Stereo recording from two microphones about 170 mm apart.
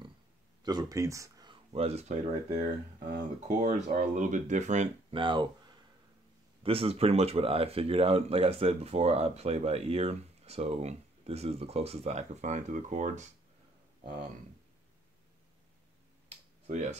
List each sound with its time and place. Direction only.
0.7 s speech: 20° right (ahead or behind); by 2.1 s 40° right (ahead or behind)
3.2 s speech: 45° right (ahead or behind)
5.1 s speech: 30° right (ahead or behind); by 13.3 s 45° right (ahead or behind)
16.6 s speech: 45° right (ahead or behind)